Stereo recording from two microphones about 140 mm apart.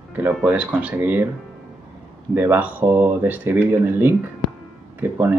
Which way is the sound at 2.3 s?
15° right (ahead or behind).